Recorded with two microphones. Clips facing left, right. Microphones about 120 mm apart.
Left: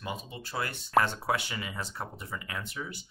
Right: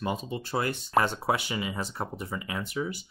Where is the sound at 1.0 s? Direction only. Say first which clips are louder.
Right 3 dB; 15° right (ahead or behind).